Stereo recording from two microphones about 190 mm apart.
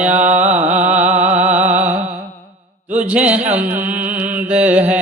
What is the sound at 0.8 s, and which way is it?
Music, 10° right (ahead or behind).